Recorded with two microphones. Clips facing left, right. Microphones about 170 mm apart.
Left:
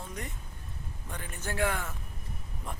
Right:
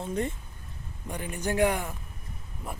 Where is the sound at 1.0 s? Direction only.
15° right (ahead or behind).